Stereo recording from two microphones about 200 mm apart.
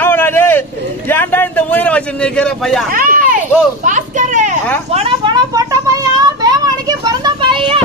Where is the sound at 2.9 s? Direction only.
45° right (ahead or behind).